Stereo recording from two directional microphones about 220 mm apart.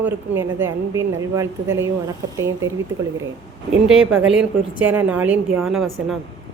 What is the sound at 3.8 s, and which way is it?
A woman's voice, 5° right (ahead or behind).